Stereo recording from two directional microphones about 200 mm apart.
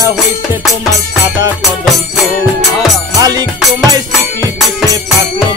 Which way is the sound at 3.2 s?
20° right (ahead or behind).